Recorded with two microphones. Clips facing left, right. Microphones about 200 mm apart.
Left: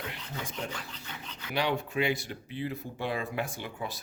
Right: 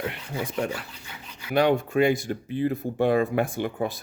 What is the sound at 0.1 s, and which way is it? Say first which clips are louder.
Speech: right 8 dB; 65° right (ahead or behind).